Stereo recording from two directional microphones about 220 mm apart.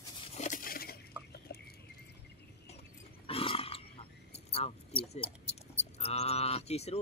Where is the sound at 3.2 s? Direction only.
25° left (ahead or behind).